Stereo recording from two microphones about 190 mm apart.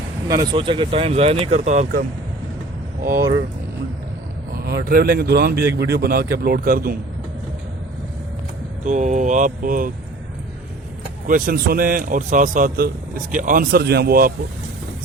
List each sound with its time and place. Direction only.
0.3 s speech: 20° right (ahead or behind); by 1.9 s 35° right (ahead or behind)
4.5 s a man's voice: 55° right (ahead or behind)
8.8 s speech: 40° right (ahead or behind)
11.3 s a man's voice: 50° right (ahead or behind)